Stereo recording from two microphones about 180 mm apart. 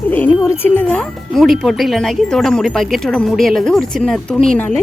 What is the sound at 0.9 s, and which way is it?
Speech, centre (ahead or behind).